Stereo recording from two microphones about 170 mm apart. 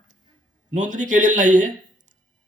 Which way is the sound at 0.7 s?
45° right (ahead or behind).